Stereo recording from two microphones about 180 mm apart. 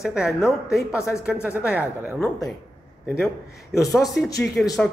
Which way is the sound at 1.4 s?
15° left (ahead or behind).